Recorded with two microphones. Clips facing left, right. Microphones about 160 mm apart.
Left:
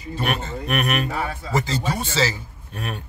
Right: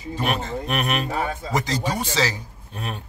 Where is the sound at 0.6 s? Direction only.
30° right (ahead or behind).